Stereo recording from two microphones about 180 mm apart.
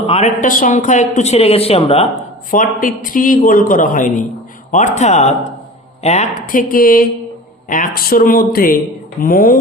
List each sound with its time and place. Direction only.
0.0 s speech: 35° left (ahead or behind)
2.5 s a man's voice: 50° left (ahead or behind)